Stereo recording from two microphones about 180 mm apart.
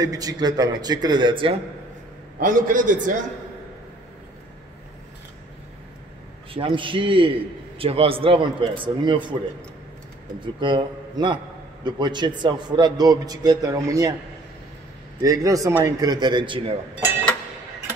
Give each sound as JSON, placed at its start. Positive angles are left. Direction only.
{"t": 0.0, "sound": "a man's voice", "side_deg": -20}
{"t": 2.3, "sound": "a man's voice", "side_deg": -50}
{"t": 6.5, "sound": "a man's voice", "side_deg": -30}
{"t": 10.4, "sound": "a man's voice", "side_deg": -25}
{"t": 15.2, "sound": "a man's voice", "side_deg": -20}